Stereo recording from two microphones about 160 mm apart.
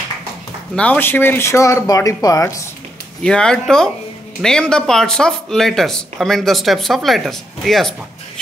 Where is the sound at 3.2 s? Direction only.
5° left (ahead or behind).